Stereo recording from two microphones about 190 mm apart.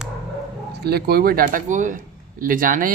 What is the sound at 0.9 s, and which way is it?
Speech, 55° right (ahead or behind).